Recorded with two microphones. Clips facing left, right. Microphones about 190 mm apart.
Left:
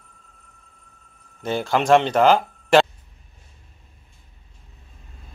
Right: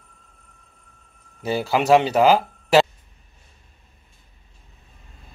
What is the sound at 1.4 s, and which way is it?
Speech, 5° right (ahead or behind).